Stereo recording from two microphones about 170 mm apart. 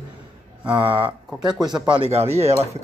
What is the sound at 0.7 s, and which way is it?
Speech, 30° right (ahead or behind).